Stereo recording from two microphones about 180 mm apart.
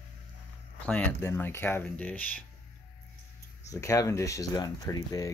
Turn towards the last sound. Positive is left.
turn(degrees=20)  # may be behind; listen again after turning